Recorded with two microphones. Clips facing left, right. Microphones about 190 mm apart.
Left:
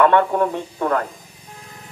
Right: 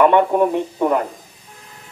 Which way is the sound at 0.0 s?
15° right (ahead or behind).